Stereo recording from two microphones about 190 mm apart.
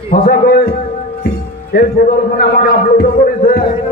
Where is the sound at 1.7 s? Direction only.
55° left (ahead or behind).